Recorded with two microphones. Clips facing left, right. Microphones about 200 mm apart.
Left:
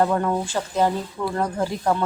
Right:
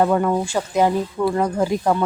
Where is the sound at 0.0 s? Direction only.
5° right (ahead or behind).